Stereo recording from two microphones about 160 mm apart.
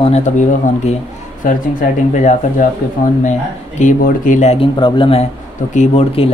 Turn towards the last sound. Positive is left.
turn(degrees=40)  # may be behind; listen again after turning